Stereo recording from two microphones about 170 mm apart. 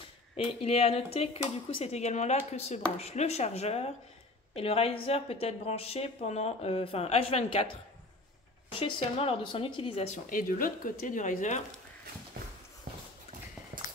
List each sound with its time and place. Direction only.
0.4 s a woman's voice: 35° left (ahead or behind)
8.7 s a woman's voice: 35° left (ahead or behind)